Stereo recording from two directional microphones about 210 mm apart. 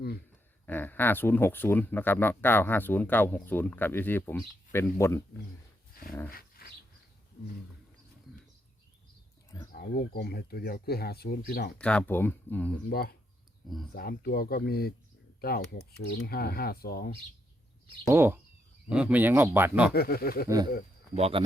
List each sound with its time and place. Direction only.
0.6 s speech: 10° left (ahead or behind)
6.3 s dog: 45° left (ahead or behind)
9.7 s speech: 45° left (ahead or behind)
11.8 s speech: 5° left (ahead or behind)
12.9 s speech: 45° left (ahead or behind)
18.1 s speech: 10° right (ahead or behind)
19.9 s speech: 45° left (ahead or behind)
21.2 s speech: 30° right (ahead or behind)